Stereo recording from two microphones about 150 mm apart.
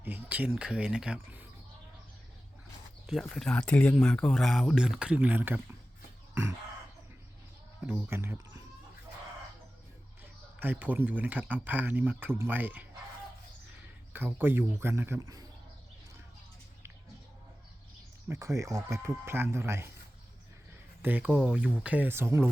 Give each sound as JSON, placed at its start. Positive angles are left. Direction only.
{"t": 0.0, "sound": "speech", "side_deg": -10}
{"t": 3.1, "sound": "speech", "side_deg": 0}
{"t": 6.3, "sound": "chicken", "side_deg": -15}
{"t": 8.0, "sound": "speech", "side_deg": -15}
{"t": 10.6, "sound": "speech", "side_deg": -10}
{"t": 14.1, "sound": "speech", "side_deg": -15}
{"t": 18.3, "sound": "speech", "side_deg": -20}
{"t": 21.0, "sound": "speech", "side_deg": -10}
{"t": 21.2, "sound": "speech", "side_deg": 5}
{"t": 21.5, "sound": "speech", "side_deg": -10}